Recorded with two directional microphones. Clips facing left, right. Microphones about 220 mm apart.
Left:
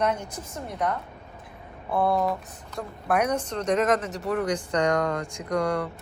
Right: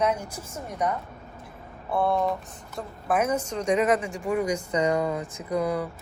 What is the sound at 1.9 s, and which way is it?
A woman's voice, centre (ahead or behind).